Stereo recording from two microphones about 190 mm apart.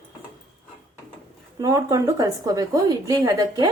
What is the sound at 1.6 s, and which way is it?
A woman's voice, 15° right (ahead or behind).